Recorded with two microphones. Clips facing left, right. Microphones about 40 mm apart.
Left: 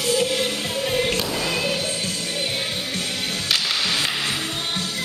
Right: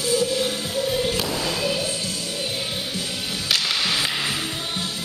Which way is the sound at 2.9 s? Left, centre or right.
Left.